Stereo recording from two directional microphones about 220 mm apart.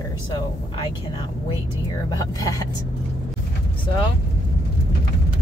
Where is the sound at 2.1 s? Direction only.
15° left (ahead or behind).